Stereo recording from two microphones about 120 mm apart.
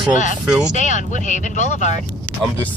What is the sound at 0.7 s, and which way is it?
Speech, 90° left.